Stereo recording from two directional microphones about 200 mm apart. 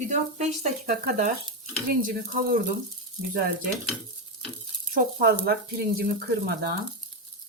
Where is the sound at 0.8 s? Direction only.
45° right (ahead or behind).